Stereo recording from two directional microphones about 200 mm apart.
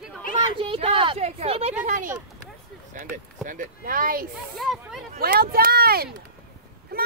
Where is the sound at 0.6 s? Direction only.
30° right (ahead or behind).